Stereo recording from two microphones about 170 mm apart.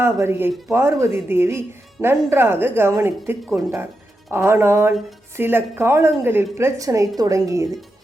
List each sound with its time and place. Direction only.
0.0 s a woman's voice: 15° right (ahead or behind)